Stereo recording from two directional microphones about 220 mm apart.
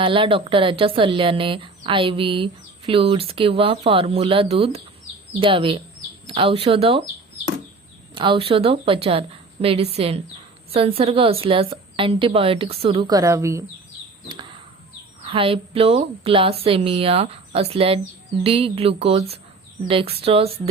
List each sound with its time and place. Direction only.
0.0 s speech: 25° right (ahead or behind)
8.1 s speech: 20° right (ahead or behind)
14.3 s bird: 20° right (ahead or behind)
15.2 s speech: 25° right (ahead or behind)